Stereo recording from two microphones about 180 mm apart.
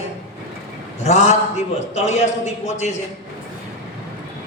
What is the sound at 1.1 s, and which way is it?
A man's voice, 40° left (ahead or behind).